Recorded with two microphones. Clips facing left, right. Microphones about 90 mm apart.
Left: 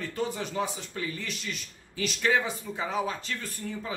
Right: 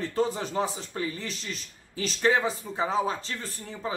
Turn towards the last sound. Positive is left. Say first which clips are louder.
# right 1 dB
turn(degrees=-30)  # may be behind; listen again after turning